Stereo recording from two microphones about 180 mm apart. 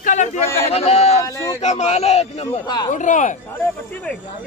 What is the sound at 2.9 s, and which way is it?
Speech, 45° left (ahead or behind).